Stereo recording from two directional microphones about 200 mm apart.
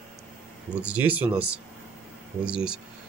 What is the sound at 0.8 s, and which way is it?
Speech, 5° right (ahead or behind).